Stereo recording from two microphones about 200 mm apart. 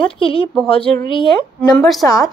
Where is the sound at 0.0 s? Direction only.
25° left (ahead or behind).